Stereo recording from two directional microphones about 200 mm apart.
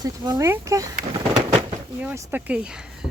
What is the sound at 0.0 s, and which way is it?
Speech, 20° right (ahead or behind).